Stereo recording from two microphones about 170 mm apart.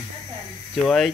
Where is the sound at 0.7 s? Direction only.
Centre (ahead or behind).